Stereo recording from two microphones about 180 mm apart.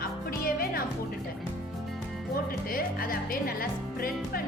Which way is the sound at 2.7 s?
50° left (ahead or behind).